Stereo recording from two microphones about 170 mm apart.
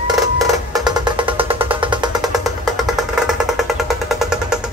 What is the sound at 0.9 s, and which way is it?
Music, 25° right (ahead or behind).